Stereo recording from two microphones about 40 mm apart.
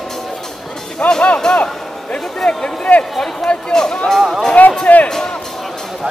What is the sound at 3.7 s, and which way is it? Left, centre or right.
Speech, centre.